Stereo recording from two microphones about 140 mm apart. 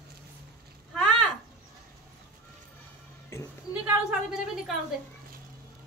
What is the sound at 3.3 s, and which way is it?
Speech, 20° left (ahead or behind).